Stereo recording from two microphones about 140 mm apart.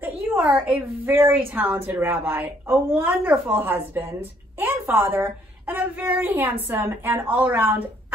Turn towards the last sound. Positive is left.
turn(degrees=-15)  # may be behind; listen again after turning